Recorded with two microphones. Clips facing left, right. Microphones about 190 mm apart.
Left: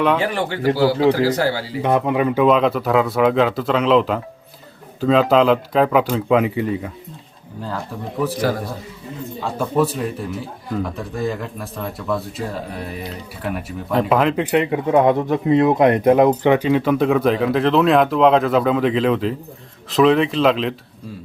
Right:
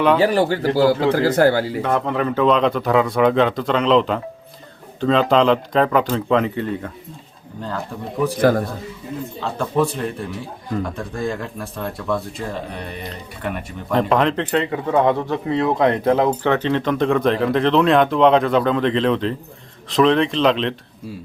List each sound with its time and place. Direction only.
0.2 s a man's voice: 40° right (ahead or behind)
1.1 s speech: 55° right (ahead or behind)
1.8 s speech: 15° left (ahead or behind)
8.4 s speech: 55° right (ahead or behind)
9.4 s speech: 5° left (ahead or behind)
14.5 s speech: 15° left (ahead or behind)